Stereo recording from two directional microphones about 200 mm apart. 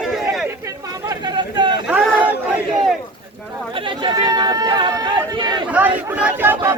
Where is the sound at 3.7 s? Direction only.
25° right (ahead or behind).